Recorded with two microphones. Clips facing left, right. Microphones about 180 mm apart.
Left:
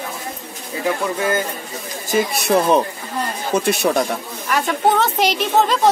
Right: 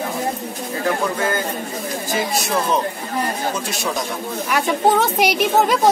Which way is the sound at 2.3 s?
60° left (ahead or behind).